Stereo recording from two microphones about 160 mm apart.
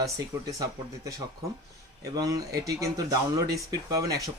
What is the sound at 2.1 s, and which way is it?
Speech, 20° right (ahead or behind).